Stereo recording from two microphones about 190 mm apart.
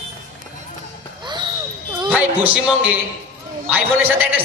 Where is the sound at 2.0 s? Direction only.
5° right (ahead or behind).